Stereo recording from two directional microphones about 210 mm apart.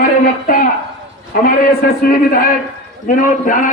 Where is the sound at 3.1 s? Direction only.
40° left (ahead or behind).